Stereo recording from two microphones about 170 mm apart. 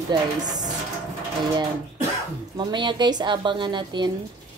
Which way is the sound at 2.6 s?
25° right (ahead or behind).